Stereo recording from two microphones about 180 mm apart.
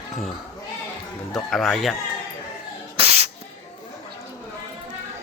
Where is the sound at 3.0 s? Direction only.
35° right (ahead or behind).